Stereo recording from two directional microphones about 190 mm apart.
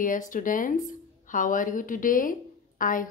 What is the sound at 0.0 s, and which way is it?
A woman's voice, 45° left (ahead or behind).